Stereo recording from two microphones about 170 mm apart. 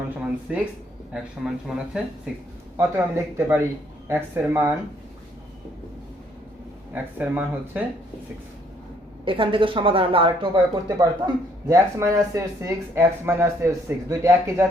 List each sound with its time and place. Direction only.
0.2 s speech: 5° right (ahead or behind)
2.7 s speech: 15° right (ahead or behind)
6.9 s speech: 10° right (ahead or behind)
9.2 s speech: 30° right (ahead or behind)